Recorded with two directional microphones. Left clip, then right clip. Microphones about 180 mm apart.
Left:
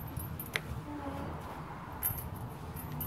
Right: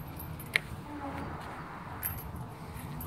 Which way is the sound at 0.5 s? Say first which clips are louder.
Right 7 dB; 10° left (ahead or behind).